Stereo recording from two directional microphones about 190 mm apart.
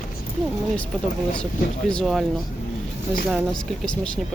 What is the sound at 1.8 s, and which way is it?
Speech, 5° left (ahead or behind).